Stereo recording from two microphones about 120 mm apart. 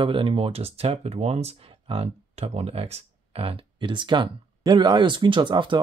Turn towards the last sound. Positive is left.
turn(degrees=-40)  # may be behind; listen again after turning